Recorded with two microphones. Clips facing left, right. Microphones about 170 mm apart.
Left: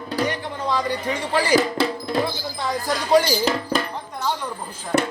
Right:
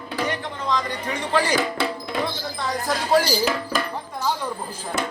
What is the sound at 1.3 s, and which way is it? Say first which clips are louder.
Speech: left 3 dB; 10° left (ahead or behind).